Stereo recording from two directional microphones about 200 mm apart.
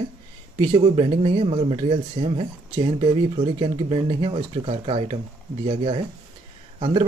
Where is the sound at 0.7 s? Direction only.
25° right (ahead or behind).